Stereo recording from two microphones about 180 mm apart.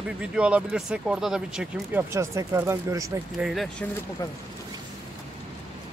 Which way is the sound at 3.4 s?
Centre (ahead or behind).